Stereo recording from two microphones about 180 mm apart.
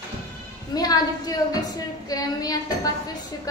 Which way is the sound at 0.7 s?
20° left (ahead or behind).